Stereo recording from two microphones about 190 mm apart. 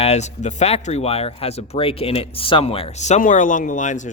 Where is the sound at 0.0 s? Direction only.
35° left (ahead or behind).